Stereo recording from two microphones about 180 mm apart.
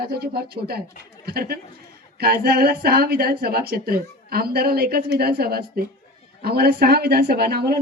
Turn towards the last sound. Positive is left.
turn(degrees=-60)  # may be behind; listen again after turning